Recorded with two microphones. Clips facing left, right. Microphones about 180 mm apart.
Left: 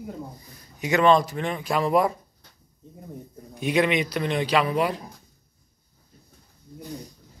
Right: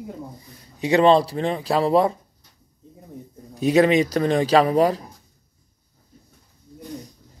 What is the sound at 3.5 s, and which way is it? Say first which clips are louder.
A man's voice: right 6 dB; 40° right (ahead or behind).